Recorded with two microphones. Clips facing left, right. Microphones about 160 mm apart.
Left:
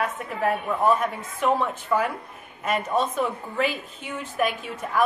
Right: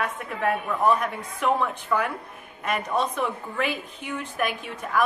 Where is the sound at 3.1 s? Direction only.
Centre (ahead or behind).